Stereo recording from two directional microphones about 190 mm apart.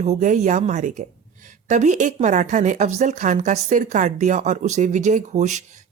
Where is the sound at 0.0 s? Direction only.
40° right (ahead or behind).